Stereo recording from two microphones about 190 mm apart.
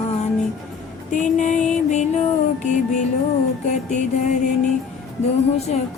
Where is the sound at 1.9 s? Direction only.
40° left (ahead or behind).